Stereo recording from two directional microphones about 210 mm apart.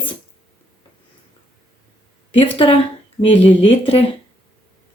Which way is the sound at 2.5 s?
25° left (ahead or behind).